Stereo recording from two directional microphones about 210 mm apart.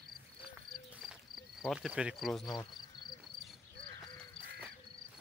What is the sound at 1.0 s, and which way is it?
Insect, centre (ahead or behind).